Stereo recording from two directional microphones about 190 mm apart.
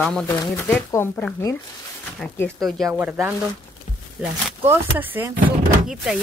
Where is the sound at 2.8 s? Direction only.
10° right (ahead or behind).